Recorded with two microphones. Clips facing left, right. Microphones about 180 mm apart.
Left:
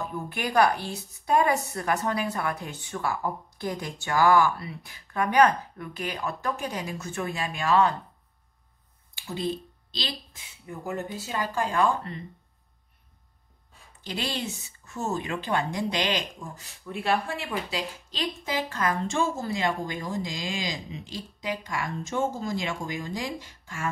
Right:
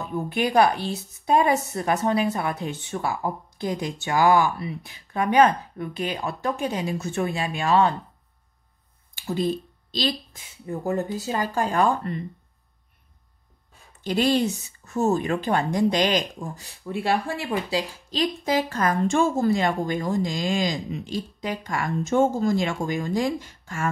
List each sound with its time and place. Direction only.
0.3 s a woman's voice: 20° right (ahead or behind)
9.2 s speech: 45° right (ahead or behind)
14.0 s a woman's voice: 50° right (ahead or behind)